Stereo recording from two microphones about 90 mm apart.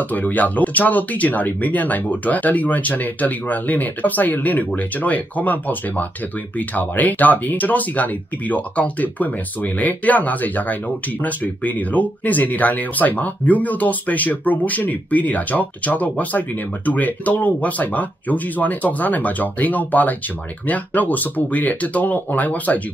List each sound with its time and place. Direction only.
0.1 s speech: 20° left (ahead or behind)